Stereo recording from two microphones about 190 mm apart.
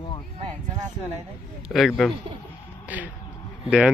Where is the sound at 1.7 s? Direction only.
Centre (ahead or behind).